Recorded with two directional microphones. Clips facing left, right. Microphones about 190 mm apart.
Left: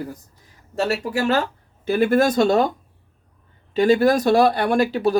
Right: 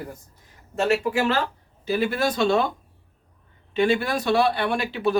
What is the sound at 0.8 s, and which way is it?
Speech, 40° left (ahead or behind).